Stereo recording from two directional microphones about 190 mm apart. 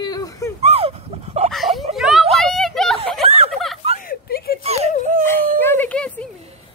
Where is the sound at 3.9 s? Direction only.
50° left (ahead or behind).